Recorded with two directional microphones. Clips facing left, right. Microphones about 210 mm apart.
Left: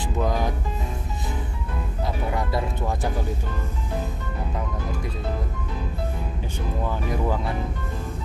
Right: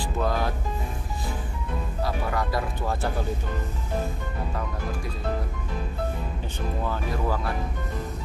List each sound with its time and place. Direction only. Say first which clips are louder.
0.0 s music: left 1 dB; 15° left (ahead or behind)
2.0 s music: left 1 dB; 20° left (ahead or behind)
6.9 s speech: left 3 dB; 20° left (ahead or behind)